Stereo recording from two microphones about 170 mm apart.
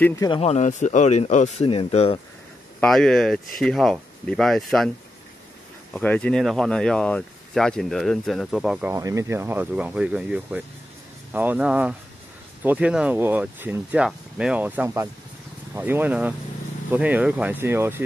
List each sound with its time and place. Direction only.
0.0 s speech: 20° left (ahead or behind)
0.3 s speech: 40° left (ahead or behind)
2.8 s speech: 5° left (ahead or behind)
5.9 s speech: 5° left (ahead or behind)
8.9 s speech: 20° right (ahead or behind)